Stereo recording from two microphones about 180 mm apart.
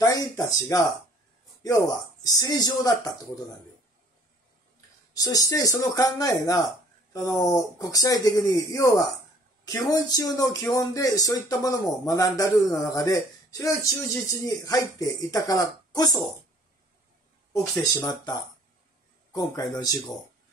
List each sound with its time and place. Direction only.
0.0 s speech: 20° left (ahead or behind)
2.2 s speech: 20° left (ahead or behind)
5.1 s speech: 20° left (ahead or behind)
17.5 s speech: 20° left (ahead or behind)